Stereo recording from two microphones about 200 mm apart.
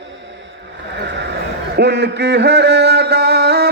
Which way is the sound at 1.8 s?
55° right (ahead or behind).